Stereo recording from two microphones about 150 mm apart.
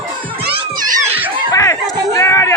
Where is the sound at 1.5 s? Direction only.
25° left (ahead or behind).